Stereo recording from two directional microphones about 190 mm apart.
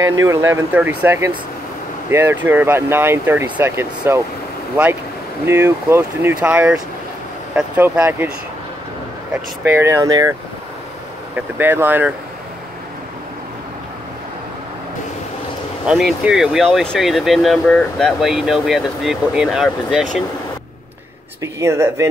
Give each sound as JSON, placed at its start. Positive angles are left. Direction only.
{"t": 0.1, "sound": "speech", "side_deg": -15}
{"t": 5.5, "sound": "speech", "side_deg": -15}
{"t": 9.3, "sound": "speech", "side_deg": -10}
{"t": 11.3, "sound": "speech", "side_deg": -10}
{"t": 15.9, "sound": "speech", "side_deg": -5}
{"t": 21.4, "sound": "speech", "side_deg": -15}